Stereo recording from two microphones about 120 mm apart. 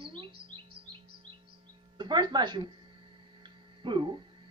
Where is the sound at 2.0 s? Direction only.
40° right (ahead or behind).